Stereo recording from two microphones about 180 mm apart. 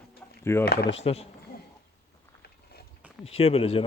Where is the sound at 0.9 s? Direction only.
35° left (ahead or behind).